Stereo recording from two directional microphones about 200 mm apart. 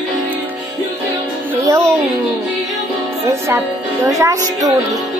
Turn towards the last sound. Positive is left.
turn(degrees=-15)  # may be behind; listen again after turning